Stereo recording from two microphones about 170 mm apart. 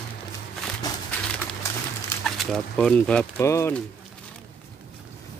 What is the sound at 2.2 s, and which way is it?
Speech, centre (ahead or behind).